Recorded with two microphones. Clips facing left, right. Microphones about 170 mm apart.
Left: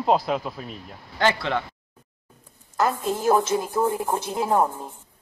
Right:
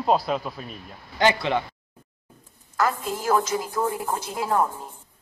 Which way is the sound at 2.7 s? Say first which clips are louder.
Left 2 dB; 25° left (ahead or behind).